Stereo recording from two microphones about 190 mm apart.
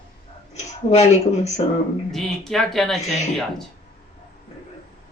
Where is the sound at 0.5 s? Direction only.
35° left (ahead or behind).